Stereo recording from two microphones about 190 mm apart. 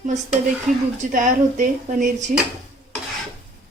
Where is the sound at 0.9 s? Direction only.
45° right (ahead or behind).